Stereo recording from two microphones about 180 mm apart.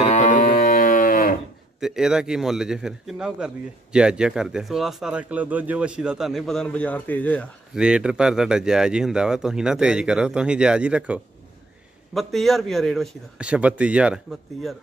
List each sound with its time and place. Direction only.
0.0 s a sound: 40° left (ahead or behind)
1.8 s a man's voice: 5° right (ahead or behind)
7.7 s a man's voice: 5° right (ahead or behind)